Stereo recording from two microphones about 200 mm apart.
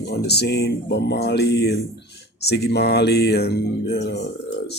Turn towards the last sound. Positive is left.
turn(degrees=55)  # may be behind; listen again after turning